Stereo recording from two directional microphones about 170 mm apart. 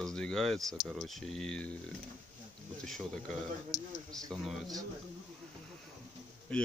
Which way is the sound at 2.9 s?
Centre (ahead or behind).